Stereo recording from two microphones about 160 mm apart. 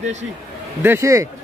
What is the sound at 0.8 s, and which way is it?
Speech, 15° right (ahead or behind).